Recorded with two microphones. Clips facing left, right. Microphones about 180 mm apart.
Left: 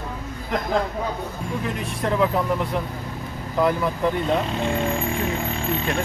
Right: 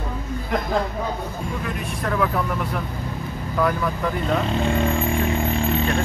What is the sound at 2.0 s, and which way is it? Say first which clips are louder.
Speech: left 2 dB; 25° left (ahead or behind).